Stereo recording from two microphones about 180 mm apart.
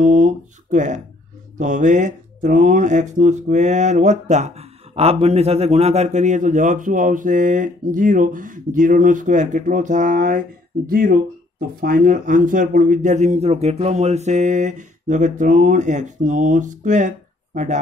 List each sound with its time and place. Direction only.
0.0 s speech: 45° right (ahead or behind)